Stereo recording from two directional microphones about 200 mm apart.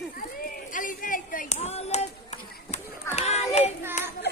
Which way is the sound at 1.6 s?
30° left (ahead or behind).